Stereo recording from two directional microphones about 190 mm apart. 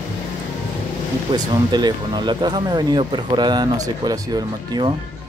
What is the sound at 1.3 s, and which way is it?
Speech, 20° right (ahead or behind).